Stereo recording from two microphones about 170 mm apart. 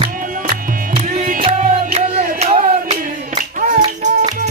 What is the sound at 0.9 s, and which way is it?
Music, 40° right (ahead or behind).